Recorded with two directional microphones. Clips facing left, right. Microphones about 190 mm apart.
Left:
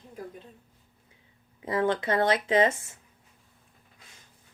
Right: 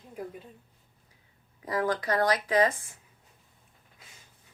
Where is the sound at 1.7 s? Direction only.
25° left (ahead or behind).